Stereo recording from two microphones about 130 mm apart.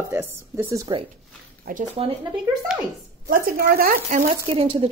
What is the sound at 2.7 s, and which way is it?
Speech, 5° right (ahead or behind).